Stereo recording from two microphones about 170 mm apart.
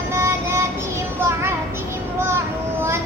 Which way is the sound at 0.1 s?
15° right (ahead or behind).